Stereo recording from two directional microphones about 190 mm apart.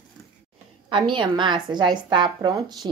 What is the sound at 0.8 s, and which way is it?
A woman's voice, 25° right (ahead or behind).